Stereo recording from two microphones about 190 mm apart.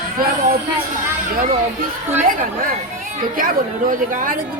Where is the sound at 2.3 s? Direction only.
45° right (ahead or behind).